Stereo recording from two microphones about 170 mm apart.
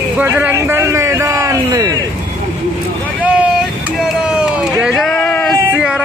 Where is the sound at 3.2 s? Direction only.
5° right (ahead or behind).